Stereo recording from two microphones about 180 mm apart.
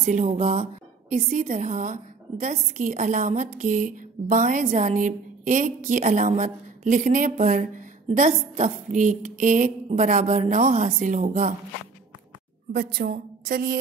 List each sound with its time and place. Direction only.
0.0 s speech: 40° right (ahead or behind)
1.1 s a woman's voice: 55° right (ahead or behind)
12.7 s a woman's voice: 55° right (ahead or behind)